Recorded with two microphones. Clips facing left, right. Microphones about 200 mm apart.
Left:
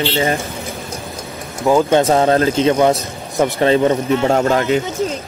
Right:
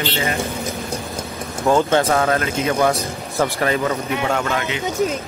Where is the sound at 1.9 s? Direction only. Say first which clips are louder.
Left 4 dB; 25° left (ahead or behind).